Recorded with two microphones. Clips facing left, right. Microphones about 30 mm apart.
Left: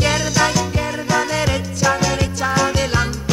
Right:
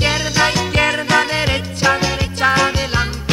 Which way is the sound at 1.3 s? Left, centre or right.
Right.